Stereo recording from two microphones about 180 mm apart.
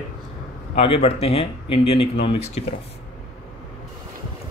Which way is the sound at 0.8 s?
35° left (ahead or behind).